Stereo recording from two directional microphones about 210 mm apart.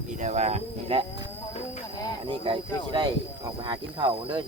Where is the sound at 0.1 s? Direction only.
35° right (ahead or behind).